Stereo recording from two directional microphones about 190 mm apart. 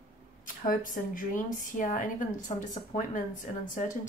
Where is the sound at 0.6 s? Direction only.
45° left (ahead or behind).